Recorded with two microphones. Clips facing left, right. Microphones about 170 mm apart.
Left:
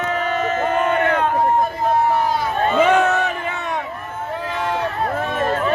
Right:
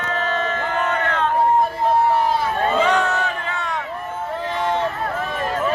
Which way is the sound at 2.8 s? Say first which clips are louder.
Left 7 dB; 20° left (ahead or behind).